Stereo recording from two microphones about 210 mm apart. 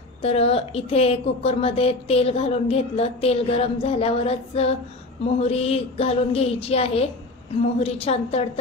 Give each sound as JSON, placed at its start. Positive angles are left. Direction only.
{"t": 0.2, "sound": "a woman's voice", "side_deg": 30}